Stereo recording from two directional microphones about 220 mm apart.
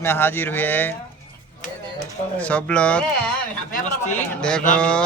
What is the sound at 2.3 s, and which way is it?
Speech, 5° left (ahead or behind).